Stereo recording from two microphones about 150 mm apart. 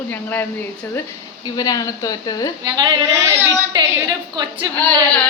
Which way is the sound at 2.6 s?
30° right (ahead or behind).